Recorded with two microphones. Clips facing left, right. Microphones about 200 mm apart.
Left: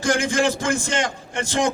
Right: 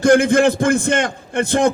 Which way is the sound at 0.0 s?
55° right (ahead or behind).